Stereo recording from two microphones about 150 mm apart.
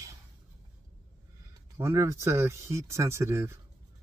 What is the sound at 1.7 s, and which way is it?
Speech, 20° right (ahead or behind).